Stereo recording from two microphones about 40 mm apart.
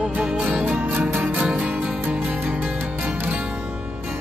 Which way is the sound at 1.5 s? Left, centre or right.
Right.